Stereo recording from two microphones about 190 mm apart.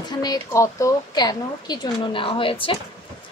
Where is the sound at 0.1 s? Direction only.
20° left (ahead or behind).